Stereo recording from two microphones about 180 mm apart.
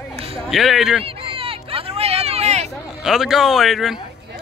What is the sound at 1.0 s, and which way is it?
Hubbub, 30° right (ahead or behind).